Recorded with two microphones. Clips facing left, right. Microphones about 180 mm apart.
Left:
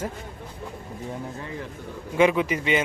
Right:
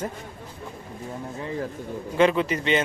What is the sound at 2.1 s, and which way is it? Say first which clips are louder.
Speech: even; 10° left (ahead or behind).